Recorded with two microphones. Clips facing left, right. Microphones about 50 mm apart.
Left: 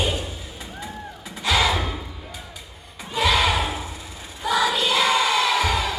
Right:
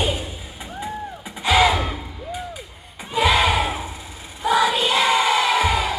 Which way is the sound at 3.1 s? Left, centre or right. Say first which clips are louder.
Right 3 dB; centre.